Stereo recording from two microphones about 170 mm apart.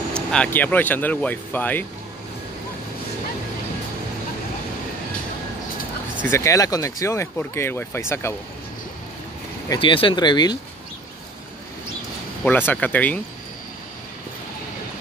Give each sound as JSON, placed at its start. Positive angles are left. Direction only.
{"t": 0.1, "sound": "speech", "side_deg": 5}
{"t": 6.2, "sound": "speech", "side_deg": 15}
{"t": 9.7, "sound": "speech", "side_deg": 30}
{"t": 12.4, "sound": "speech", "side_deg": 10}